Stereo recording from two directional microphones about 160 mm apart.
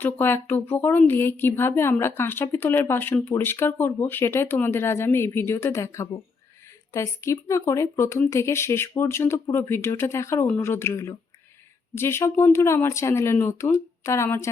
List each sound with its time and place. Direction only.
0.0 s a woman's voice: 15° left (ahead or behind)